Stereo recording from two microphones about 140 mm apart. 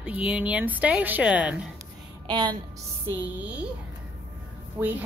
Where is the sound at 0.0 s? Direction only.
5° right (ahead or behind).